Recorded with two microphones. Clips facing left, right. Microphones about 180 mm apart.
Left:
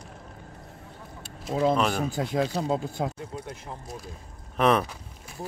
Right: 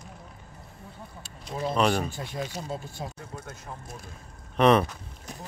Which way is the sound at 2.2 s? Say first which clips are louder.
Left 8 dB; 90° left.